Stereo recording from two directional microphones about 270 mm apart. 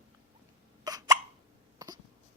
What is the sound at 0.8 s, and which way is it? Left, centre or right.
Hiccup, centre.